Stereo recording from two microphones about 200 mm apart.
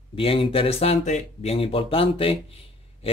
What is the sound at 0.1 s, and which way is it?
Speech, 25° left (ahead or behind).